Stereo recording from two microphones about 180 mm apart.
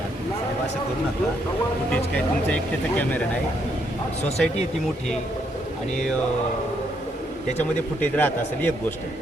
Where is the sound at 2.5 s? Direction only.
10° left (ahead or behind).